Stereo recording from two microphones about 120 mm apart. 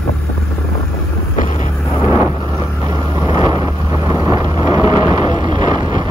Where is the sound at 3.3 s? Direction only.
35° right (ahead or behind).